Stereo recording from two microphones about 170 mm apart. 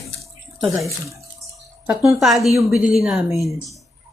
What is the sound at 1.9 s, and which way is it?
A woman's voice, centre (ahead or behind).